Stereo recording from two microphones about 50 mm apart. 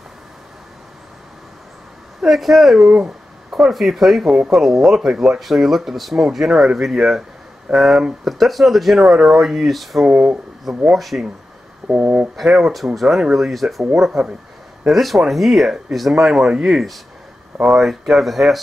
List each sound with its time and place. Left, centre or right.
2.2 s speech: centre
5.4 s speech: centre
10.0 s speech: right
10.9 s speech: centre
11.9 s speech: right
12.5 s speech: centre